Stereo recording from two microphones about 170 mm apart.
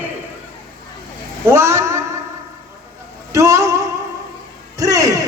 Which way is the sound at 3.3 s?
20° right (ahead or behind).